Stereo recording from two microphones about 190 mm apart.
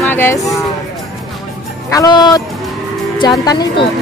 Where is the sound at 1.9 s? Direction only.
20° left (ahead or behind).